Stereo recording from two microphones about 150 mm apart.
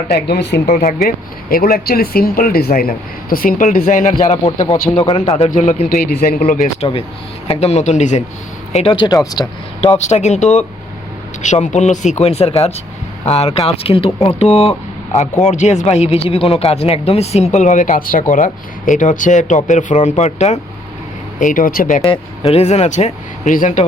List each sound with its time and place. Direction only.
0.1 s speech: 90° left
1.0 s speech: 80° left; by 4.4 s 60° left (ahead or behind)
4.6 s speech: 20° left (ahead or behind)
4.9 s speech: 35° left (ahead or behind)
6.1 s speech: 90° left
7.4 s speech: 45° left (ahead or behind)
8.7 s speech: 40° left (ahead or behind)
9.8 s speech: 50° left (ahead or behind)
21.3 s speech: 60° left (ahead or behind)
22.0 s speech: 40° left (ahead or behind); by 23.8 s 60° left (ahead or behind)